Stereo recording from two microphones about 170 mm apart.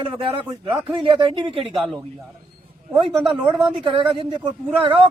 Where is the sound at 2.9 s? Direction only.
30° right (ahead or behind).